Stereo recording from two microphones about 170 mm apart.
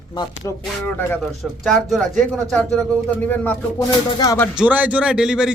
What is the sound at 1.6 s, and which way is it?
Speech, centre (ahead or behind).